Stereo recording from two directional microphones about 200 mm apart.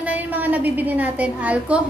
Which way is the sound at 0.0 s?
10° right (ahead or behind).